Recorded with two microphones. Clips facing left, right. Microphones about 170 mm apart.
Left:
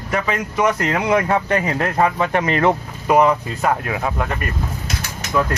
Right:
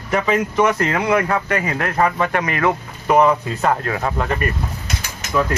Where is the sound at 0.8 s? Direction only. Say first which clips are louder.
Even; 15° left (ahead or behind).